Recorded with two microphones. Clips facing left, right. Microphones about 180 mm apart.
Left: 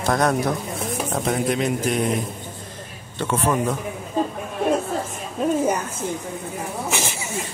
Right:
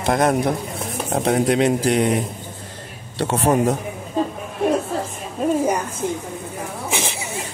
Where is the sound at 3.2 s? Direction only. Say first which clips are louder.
Right 4 dB; 35° right (ahead or behind).